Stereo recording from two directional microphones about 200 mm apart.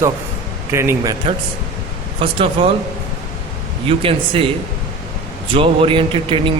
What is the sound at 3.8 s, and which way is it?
Speech, 25° right (ahead or behind).